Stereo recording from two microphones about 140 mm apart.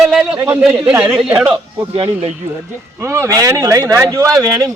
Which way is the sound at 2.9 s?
20° right (ahead or behind).